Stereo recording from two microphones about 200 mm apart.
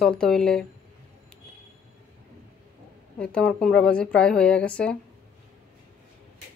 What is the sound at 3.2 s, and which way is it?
Speech, 5° left (ahead or behind).